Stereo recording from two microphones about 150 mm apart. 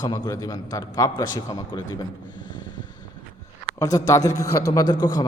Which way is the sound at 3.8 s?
25° left (ahead or behind).